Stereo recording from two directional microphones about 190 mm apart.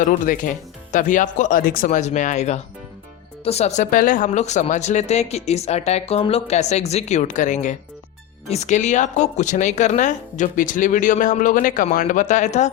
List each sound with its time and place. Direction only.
0.0 s speech: 45° left (ahead or behind)